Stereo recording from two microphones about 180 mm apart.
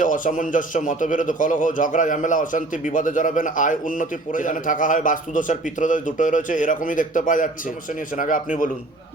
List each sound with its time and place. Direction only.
0.0 s a man's voice: 45° left (ahead or behind)